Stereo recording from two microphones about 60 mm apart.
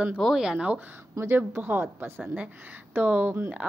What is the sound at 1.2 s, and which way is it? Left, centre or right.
Speech, right.